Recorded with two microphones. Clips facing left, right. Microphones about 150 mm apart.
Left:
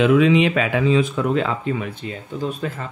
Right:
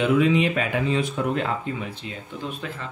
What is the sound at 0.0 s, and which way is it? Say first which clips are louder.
Speech: left 5 dB; 90° left.